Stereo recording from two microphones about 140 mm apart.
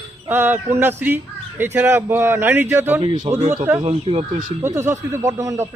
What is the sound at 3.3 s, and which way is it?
Speech, 50° right (ahead or behind).